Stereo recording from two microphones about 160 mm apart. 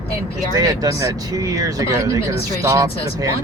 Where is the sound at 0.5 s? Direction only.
25° right (ahead or behind).